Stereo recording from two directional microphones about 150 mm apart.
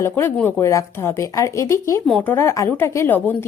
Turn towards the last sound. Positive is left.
turn(degrees=15)  # may be behind; listen again after turning